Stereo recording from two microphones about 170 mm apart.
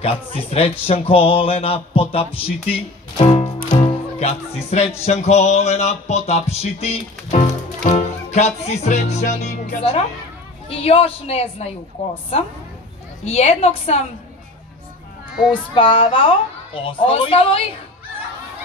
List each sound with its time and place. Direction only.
0.0 s speech: 35° left (ahead or behind)
3.6 s music: 30° left (ahead or behind)
5.0 s speech: 40° left (ahead or behind)
10.7 s speech: 35° left (ahead or behind)
13.2 s speech: 40° left (ahead or behind)
15.7 s speech: 30° left (ahead or behind)